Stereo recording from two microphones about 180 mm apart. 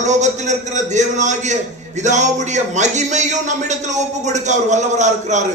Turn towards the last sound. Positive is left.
turn(degrees=-40)  # may be behind; listen again after turning